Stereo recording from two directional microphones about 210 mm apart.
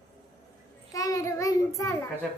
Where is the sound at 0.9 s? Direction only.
15° left (ahead or behind).